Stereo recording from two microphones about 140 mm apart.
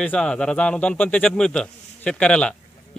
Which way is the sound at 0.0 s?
5° left (ahead or behind).